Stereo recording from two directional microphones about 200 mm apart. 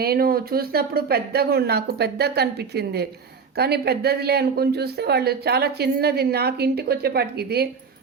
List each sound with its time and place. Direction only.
0.0 s speech: 50° right (ahead or behind)